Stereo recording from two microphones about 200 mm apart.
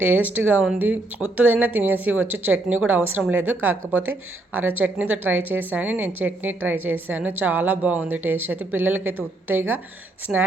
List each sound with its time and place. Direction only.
0.0 s a woman's voice: 10° right (ahead or behind)